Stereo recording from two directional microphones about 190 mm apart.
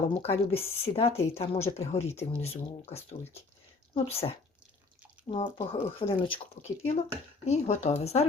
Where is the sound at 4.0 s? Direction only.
30° left (ahead or behind).